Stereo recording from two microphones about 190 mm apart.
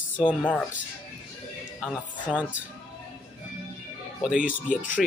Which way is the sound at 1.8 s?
Centre (ahead or behind).